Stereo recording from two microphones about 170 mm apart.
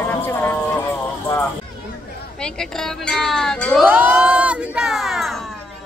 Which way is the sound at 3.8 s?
10° right (ahead or behind).